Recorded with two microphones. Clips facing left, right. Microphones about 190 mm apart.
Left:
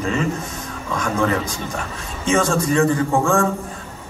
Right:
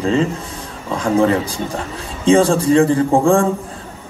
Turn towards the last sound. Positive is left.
turn(degrees=-30)  # may be behind; listen again after turning